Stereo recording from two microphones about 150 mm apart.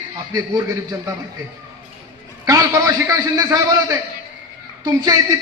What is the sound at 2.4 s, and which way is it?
A man's voice, 20° right (ahead or behind).